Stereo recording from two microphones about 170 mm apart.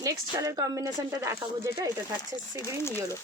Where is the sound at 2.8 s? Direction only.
15° left (ahead or behind).